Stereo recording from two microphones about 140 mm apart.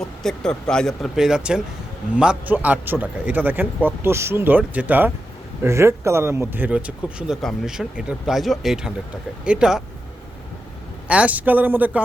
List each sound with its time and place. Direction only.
0.2 s speech: 5° left (ahead or behind)
11.1 s speech: 10° right (ahead or behind)